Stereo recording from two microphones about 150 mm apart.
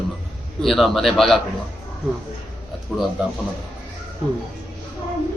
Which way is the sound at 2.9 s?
Centre (ahead or behind).